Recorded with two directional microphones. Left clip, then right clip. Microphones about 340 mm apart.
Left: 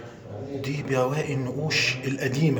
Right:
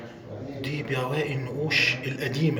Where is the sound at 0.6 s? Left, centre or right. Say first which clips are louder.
Left 4 dB; centre.